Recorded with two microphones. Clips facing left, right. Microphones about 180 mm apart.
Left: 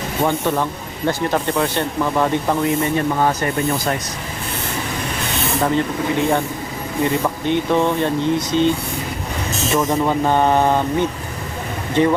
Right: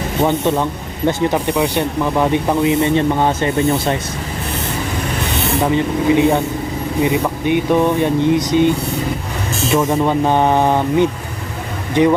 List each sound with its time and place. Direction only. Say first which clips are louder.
0.3 s speech: right 2 dB; 20° right (ahead or behind)
5.5 s speech: right 2 dB; 15° right (ahead or behind)
9.9 s speech: right 2 dB; 15° right (ahead or behind)